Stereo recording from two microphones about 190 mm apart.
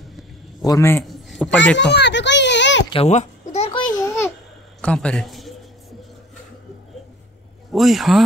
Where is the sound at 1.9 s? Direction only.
65° left (ahead or behind).